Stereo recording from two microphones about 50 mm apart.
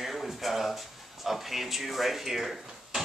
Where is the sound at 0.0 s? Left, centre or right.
Centre.